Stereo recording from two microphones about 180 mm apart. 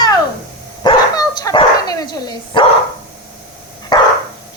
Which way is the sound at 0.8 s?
20° left (ahead or behind).